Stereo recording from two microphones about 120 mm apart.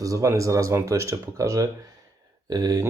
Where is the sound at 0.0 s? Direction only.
25° right (ahead or behind).